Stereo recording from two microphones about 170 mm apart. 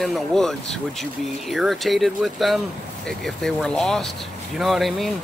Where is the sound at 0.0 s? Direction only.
Centre (ahead or behind).